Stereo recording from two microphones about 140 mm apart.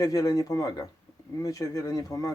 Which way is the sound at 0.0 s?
25° left (ahead or behind).